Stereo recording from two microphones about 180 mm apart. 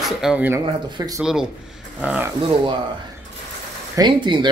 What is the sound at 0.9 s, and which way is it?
Speech, 20° right (ahead or behind).